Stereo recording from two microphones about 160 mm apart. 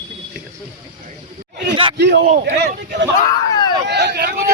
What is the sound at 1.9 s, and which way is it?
Speech, 90° right.